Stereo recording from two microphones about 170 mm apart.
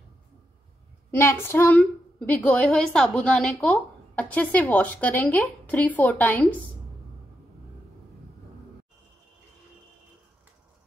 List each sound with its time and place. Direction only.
1.1 s a woman's voice: 15° left (ahead or behind)